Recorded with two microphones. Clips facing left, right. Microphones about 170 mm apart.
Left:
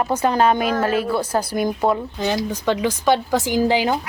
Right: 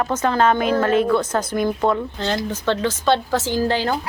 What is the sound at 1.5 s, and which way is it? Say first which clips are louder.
Speech: right 1 dB; 10° left (ahead or behind).